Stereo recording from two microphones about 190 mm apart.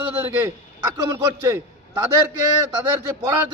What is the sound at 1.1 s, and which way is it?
Speech, 15° right (ahead or behind).